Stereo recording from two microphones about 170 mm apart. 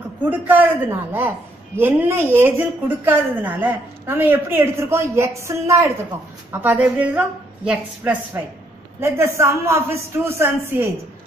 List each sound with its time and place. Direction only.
0.2 s a woman's voice: 10° right (ahead or behind)